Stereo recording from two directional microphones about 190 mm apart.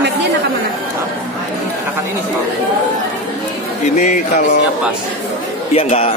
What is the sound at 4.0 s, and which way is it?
Speech, 35° left (ahead or behind).